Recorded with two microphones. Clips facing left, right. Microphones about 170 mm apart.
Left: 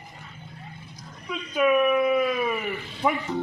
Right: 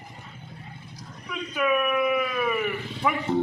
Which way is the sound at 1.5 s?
20° left (ahead or behind).